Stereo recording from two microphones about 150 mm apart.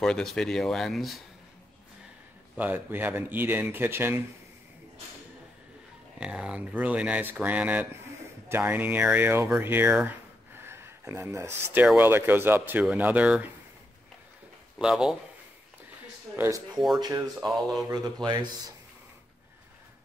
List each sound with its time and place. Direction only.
0.0 s speech: 5° left (ahead or behind)
2.5 s speech: 10° right (ahead or behind)
6.1 s speech: 5° right (ahead or behind)
9.9 s a sound: 15° right (ahead or behind)
12.0 s speech: 15° right (ahead or behind)
14.8 s speech: 5° right (ahead or behind)
16.3 s speech: 20° right (ahead or behind)
16.7 s speech: centre (ahead or behind)
17.0 s speech: 20° right (ahead or behind)
17.5 s speech: centre (ahead or behind)
17.8 s speech: 25° right (ahead or behind)